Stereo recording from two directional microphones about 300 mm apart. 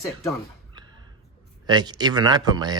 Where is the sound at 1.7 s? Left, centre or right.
Centre.